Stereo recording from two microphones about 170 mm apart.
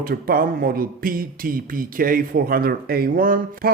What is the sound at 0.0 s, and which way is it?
Speech, 60° right (ahead or behind).